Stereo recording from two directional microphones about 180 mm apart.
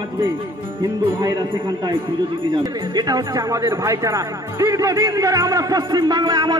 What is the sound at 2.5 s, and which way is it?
Speech, 25° right (ahead or behind).